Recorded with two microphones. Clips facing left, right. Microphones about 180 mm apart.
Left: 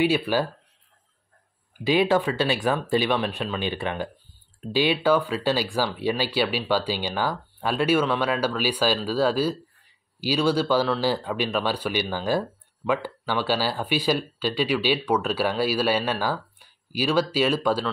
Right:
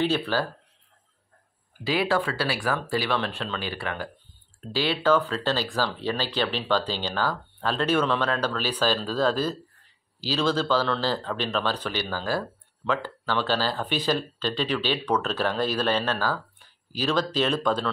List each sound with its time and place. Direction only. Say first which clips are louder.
0.0 s speech: left 3 dB; 10° left (ahead or behind)
1.9 s speech: left 4 dB; 20° left (ahead or behind)